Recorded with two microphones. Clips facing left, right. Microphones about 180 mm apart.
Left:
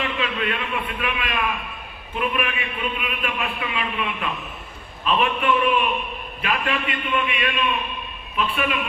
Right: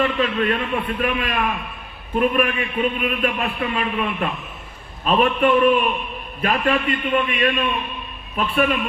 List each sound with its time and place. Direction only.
0.0 s a man's voice: 40° right (ahead or behind)